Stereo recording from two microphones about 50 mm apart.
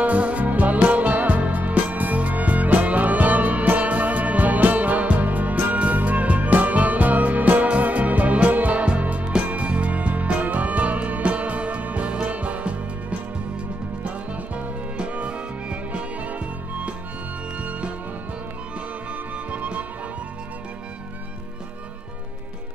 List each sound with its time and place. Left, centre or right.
0.0 s music: right
14.0 s music: right
19.3 s music: right